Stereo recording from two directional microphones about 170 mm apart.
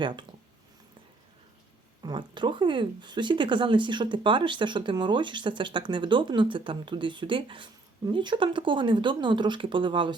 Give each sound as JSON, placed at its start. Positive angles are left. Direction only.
{"t": 0.0, "sound": "speech", "side_deg": -30}
{"t": 2.0, "sound": "speech", "side_deg": -25}